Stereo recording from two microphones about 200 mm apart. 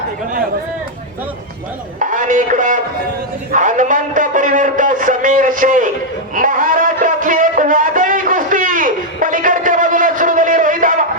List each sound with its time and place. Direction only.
2.0 s a man's voice: 40° right (ahead or behind)
6.3 s music: 40° right (ahead or behind)